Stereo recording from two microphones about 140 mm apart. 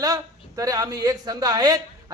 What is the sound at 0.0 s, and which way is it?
A man's voice, 25° right (ahead or behind).